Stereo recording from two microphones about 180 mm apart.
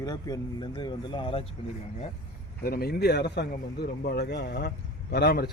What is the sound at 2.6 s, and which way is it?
A man's voice, 55° left (ahead or behind).